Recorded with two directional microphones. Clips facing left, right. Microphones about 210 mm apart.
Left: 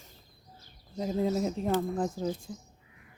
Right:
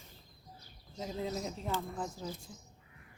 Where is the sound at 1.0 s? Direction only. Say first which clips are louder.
Left 9 dB; 45° left (ahead or behind).